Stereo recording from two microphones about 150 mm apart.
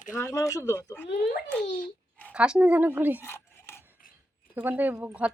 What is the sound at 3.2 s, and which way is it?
Cutlery, 15° left (ahead or behind).